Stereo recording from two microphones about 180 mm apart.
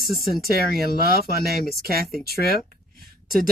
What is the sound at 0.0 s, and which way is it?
Speech, 60° left (ahead or behind).